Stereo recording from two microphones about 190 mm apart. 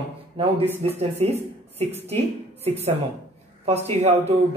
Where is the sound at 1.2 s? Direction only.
35° right (ahead or behind).